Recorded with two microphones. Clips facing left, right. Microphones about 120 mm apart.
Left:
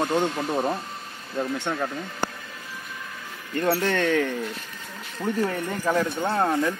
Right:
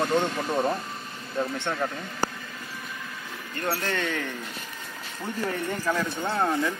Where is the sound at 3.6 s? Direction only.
80° left.